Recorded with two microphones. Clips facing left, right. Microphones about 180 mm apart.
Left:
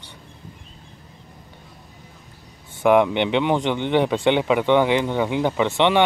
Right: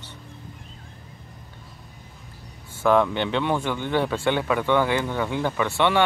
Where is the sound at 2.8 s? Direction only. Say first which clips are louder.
Left 3 dB; 20° left (ahead or behind).